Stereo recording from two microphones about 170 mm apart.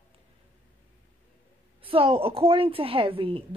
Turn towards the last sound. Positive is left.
turn(degrees=-30)  # may be behind; listen again after turning